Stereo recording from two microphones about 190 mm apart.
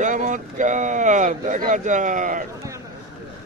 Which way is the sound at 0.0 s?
40° right (ahead or behind).